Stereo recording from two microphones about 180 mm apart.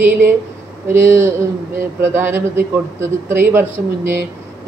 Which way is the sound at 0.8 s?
15° right (ahead or behind).